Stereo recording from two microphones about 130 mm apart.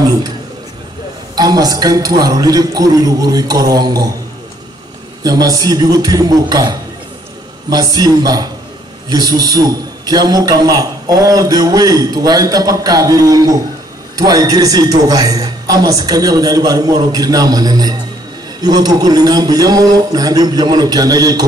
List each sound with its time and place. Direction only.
1.3 s a man's voice: 30° right (ahead or behind)
5.2 s a man's voice: 30° right (ahead or behind)